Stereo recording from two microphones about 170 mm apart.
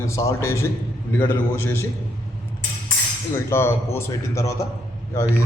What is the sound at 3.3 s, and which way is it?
A man's voice, 15° left (ahead or behind).